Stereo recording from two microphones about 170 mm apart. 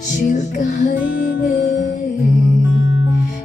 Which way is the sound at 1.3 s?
90° left.